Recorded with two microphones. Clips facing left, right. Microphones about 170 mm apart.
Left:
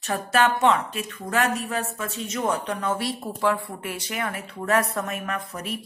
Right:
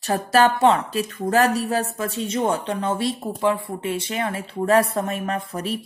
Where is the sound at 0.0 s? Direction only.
35° right (ahead or behind).